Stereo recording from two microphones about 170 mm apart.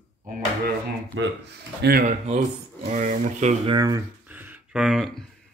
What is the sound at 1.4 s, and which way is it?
Speech, 70° right (ahead or behind).